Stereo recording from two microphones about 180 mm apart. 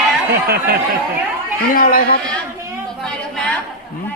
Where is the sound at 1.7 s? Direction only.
50° left (ahead or behind).